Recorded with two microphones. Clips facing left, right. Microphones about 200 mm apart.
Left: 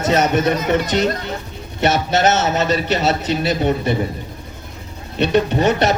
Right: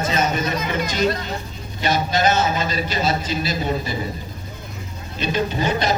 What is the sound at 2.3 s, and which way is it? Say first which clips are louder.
A man's voice: left 4 dB; 70° left (ahead or behind).